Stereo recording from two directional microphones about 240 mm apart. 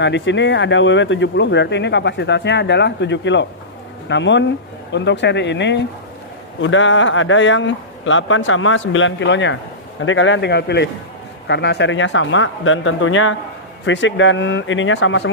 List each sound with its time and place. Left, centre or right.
0.0 s a man's voice: left